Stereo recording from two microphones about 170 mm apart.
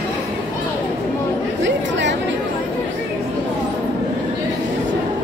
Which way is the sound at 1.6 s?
90° right.